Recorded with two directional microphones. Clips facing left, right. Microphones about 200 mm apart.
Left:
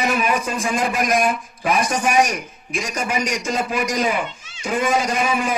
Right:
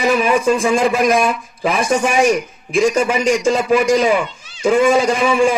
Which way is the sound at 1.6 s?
25° right (ahead or behind).